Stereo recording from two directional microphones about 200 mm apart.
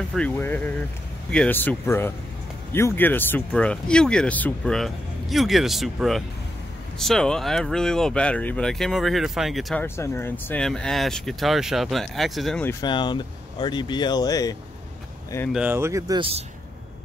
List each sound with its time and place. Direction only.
0.1 s speech: 5° left (ahead or behind)
9.8 s speech: 10° left (ahead or behind)
12.8 s speech: 20° left (ahead or behind)
15.5 s speech: 10° right (ahead or behind); by 16.4 s 25° right (ahead or behind)